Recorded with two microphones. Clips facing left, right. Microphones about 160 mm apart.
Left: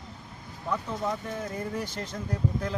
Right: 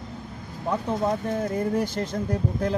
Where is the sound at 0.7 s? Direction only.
35° right (ahead or behind).